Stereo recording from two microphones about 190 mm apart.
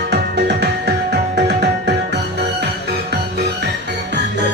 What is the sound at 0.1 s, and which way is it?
Music, 60° right (ahead or behind).